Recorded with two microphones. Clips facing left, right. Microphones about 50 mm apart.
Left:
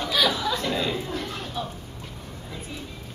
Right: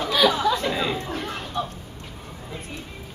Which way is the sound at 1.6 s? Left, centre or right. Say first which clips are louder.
Right 4 dB; centre.